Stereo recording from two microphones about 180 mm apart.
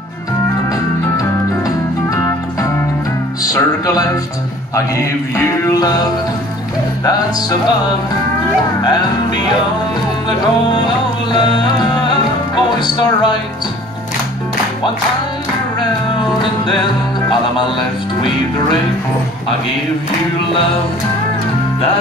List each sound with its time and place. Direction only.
3.5 s music: 20° left (ahead or behind)
5.3 s music: 15° left (ahead or behind)
11.3 s music: 25° left (ahead or behind)